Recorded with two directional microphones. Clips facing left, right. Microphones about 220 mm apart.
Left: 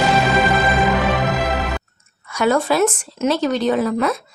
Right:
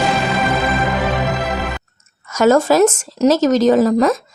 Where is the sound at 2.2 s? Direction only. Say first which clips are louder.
Right 5 dB; 45° right (ahead or behind).